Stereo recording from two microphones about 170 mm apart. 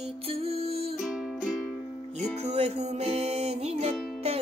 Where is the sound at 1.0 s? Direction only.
Centre (ahead or behind).